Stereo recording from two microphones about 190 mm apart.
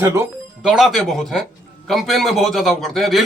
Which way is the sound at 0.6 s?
Centre (ahead or behind).